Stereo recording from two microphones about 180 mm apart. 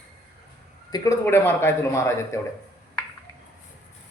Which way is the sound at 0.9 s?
20° left (ahead or behind).